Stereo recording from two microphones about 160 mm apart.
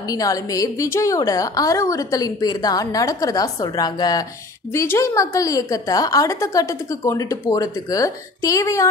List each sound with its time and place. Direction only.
0.1 s a woman's voice: 20° left (ahead or behind)